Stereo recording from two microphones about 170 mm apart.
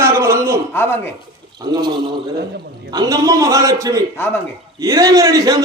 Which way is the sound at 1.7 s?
25° right (ahead or behind).